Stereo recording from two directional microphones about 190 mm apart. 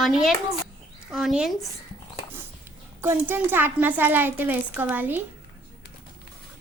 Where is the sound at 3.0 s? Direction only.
10° right (ahead or behind).